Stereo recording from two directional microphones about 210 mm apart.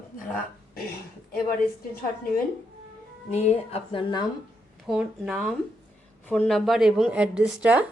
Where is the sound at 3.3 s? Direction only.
30° left (ahead or behind).